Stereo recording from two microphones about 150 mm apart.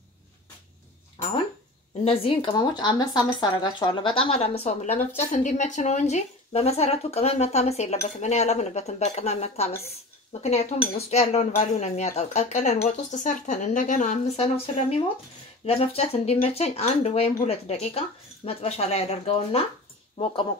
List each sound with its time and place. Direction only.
2.0 s speech: 40° left (ahead or behind)